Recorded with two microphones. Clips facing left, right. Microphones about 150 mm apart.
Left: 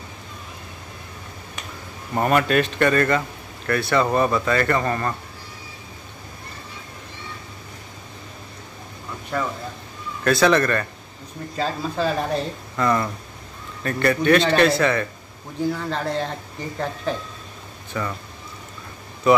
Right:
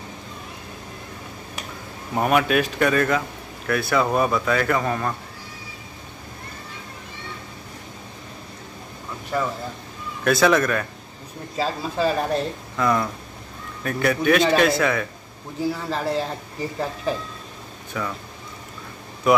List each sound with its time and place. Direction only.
2.1 s speech: 5° right (ahead or behind)
9.3 s speech: 5° right (ahead or behind)